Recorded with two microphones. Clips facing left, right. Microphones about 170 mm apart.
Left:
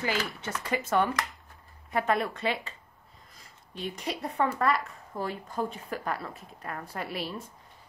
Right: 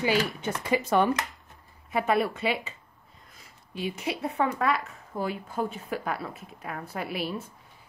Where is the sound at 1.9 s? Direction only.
5° right (ahead or behind).